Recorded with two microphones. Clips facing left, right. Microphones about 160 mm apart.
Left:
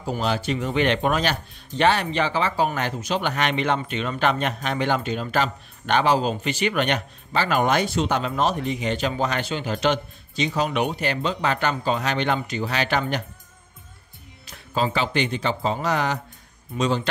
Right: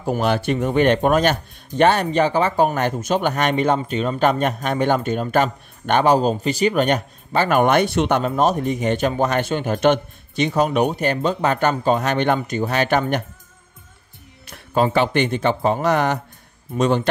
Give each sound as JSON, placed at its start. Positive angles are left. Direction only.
{"t": 0.0, "sound": "speech", "side_deg": -60}
{"t": 8.4, "sound": "speech", "side_deg": -45}
{"t": 14.5, "sound": "speech", "side_deg": -55}